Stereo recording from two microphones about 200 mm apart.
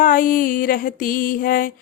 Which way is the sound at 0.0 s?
45° left (ahead or behind).